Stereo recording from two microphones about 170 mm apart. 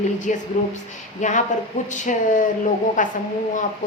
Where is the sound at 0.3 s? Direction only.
50° left (ahead or behind).